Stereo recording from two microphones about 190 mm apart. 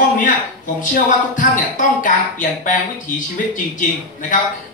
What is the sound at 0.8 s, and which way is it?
Speech, 45° left (ahead or behind).